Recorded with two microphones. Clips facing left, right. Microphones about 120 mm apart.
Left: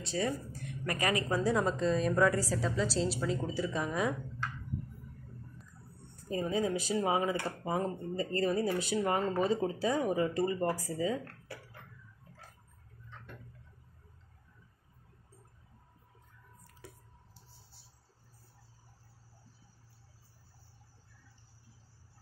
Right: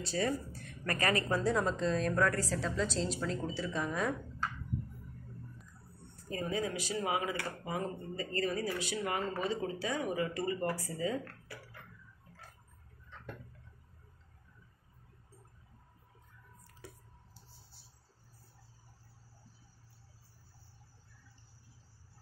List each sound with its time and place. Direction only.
0.0 s a woman's voice: 15° left (ahead or behind)
6.2 s a woman's voice: 25° left (ahead or behind)